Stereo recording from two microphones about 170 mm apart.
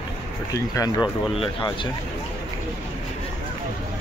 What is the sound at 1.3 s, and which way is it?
Speech, 30° left (ahead or behind).